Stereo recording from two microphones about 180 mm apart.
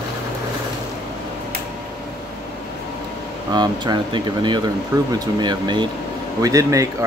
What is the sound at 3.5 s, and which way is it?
Speech, 25° right (ahead or behind).